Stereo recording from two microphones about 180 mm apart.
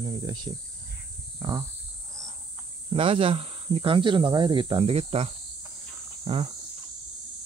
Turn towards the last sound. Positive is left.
turn(degrees=-30)  # may be behind; listen again after turning